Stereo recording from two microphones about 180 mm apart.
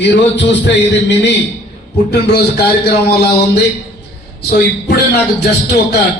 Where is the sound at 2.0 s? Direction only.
65° left (ahead or behind).